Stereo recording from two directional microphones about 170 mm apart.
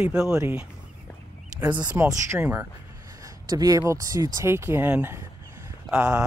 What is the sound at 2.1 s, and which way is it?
Speech, 15° right (ahead or behind).